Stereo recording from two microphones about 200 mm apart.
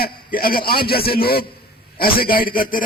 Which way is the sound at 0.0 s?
45° left (ahead or behind).